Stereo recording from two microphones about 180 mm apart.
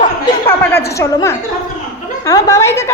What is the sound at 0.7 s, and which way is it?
A woman's voice, 15° left (ahead or behind).